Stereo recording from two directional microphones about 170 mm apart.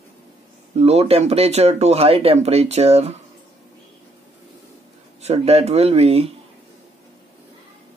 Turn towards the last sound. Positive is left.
turn(degrees=-35)  # may be behind; listen again after turning